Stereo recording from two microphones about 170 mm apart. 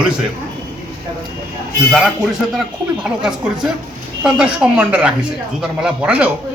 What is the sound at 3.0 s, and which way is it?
A man's voice, 5° right (ahead or behind).